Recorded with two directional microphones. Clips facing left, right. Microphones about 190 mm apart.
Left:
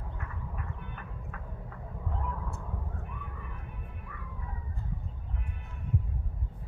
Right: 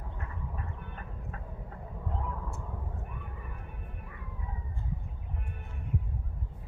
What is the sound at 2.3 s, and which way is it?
Vehicle, centre (ahead or behind).